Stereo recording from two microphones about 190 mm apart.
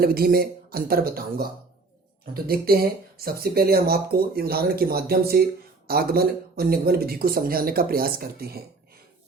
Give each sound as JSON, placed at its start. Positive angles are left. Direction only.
{"t": 0.0, "sound": "speech", "side_deg": -50}